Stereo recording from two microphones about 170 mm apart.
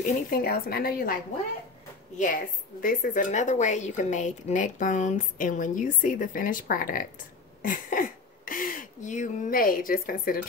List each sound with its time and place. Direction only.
0.3 s a woman's voice: 60° left (ahead or behind)
2.1 s a woman's voice: 55° left (ahead or behind)